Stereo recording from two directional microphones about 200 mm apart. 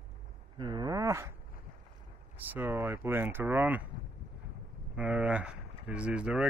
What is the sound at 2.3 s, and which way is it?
Speech, 10° right (ahead or behind).